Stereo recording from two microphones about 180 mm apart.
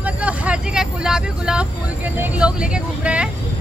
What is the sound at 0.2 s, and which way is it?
Vehicle, 5° right (ahead or behind).